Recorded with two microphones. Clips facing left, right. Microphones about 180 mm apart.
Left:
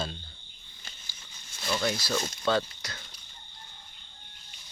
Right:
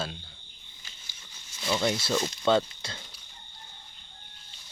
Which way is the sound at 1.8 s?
25° right (ahead or behind).